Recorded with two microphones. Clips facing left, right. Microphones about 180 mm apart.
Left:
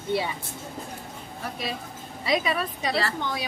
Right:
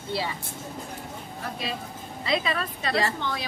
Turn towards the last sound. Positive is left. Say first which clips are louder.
# right 1 dB
turn(degrees=10)  # may be behind; listen again after turning